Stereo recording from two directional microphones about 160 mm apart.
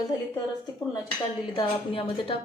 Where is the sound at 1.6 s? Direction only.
35° left (ahead or behind).